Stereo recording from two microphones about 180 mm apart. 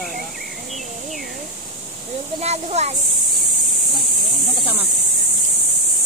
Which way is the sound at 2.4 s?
35° right (ahead or behind).